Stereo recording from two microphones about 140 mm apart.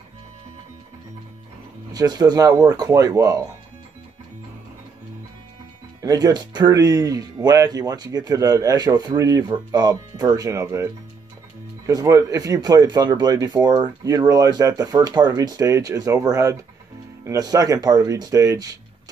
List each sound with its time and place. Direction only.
1.9 s speech: 30° right (ahead or behind)
6.0 s speech: 25° right (ahead or behind)